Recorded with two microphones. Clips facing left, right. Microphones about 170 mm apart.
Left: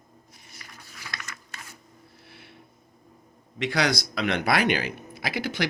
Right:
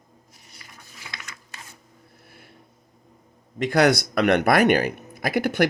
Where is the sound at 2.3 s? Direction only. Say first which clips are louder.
Even; 45° right (ahead or behind).